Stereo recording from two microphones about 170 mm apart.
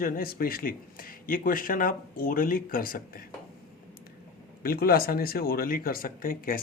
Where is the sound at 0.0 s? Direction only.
60° left (ahead or behind).